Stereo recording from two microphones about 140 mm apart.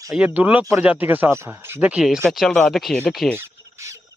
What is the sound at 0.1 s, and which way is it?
Speech, 10° right (ahead or behind).